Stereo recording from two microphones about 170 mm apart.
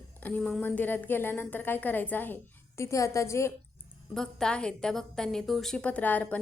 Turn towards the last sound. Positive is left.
turn(degrees=10)  # may be behind; listen again after turning